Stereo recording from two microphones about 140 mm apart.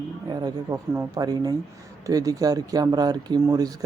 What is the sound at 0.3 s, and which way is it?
Speech, 30° right (ahead or behind).